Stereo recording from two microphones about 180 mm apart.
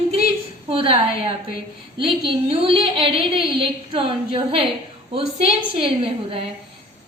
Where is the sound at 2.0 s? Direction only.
30° right (ahead or behind).